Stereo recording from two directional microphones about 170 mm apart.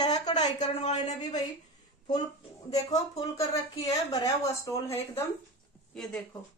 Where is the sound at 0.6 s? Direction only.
40° left (ahead or behind).